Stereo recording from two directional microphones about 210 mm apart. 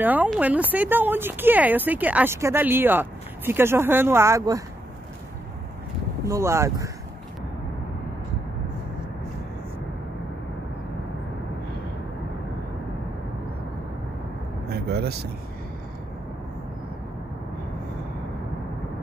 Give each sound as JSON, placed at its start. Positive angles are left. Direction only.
{"t": 0.0, "sound": "speech", "side_deg": -10}
{"t": 6.2, "sound": "speech", "side_deg": -15}
{"t": 14.7, "sound": "vehicle", "side_deg": -50}